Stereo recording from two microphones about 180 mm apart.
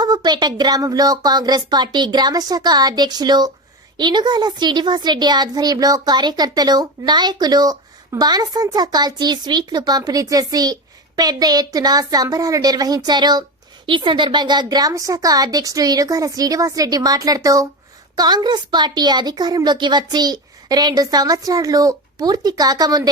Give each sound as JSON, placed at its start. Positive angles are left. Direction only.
{"t": 0.0, "sound": "a woman's voice", "side_deg": -20}